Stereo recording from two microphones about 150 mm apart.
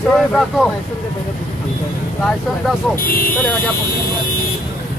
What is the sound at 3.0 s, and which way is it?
Speech, 70° left (ahead or behind).